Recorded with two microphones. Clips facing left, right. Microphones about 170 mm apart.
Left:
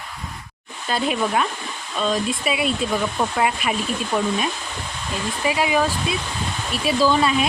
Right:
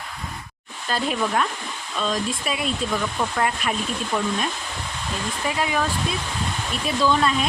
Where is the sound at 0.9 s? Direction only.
5° left (ahead or behind).